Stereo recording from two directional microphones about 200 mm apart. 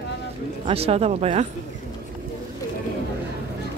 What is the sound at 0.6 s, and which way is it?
Speech, 30° right (ahead or behind).